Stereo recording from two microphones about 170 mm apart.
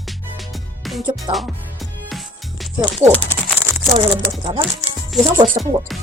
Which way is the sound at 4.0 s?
30° right (ahead or behind).